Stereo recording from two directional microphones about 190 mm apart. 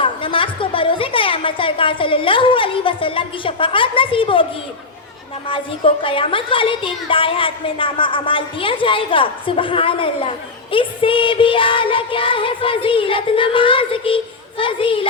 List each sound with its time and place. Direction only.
0.0 s a woman's voice: 25° left (ahead or behind)
5.5 s a woman's voice: 25° left (ahead or behind)